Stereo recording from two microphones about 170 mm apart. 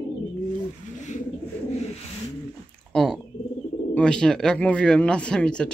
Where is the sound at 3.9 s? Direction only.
5° left (ahead or behind).